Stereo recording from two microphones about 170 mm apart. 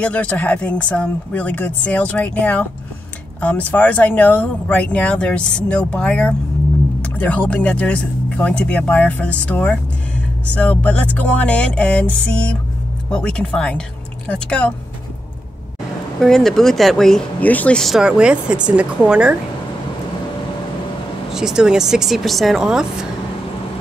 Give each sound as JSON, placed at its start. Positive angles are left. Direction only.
{"t": 0.0, "sound": "speech", "side_deg": 10}
{"t": 13.1, "sound": "speech", "side_deg": 5}
{"t": 16.2, "sound": "speech", "side_deg": 5}
{"t": 21.3, "sound": "speech", "side_deg": -5}